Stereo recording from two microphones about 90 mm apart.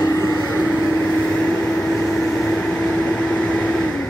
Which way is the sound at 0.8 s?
25° left (ahead or behind).